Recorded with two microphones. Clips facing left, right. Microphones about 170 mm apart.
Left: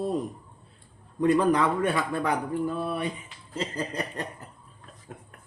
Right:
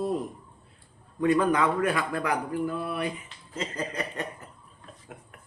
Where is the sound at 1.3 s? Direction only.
35° left (ahead or behind).